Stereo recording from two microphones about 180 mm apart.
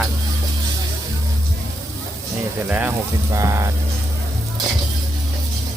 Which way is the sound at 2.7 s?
10° right (ahead or behind).